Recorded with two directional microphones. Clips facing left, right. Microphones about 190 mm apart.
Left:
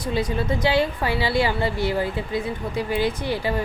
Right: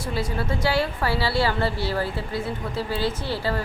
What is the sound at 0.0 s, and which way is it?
A woman's voice, 20° left (ahead or behind).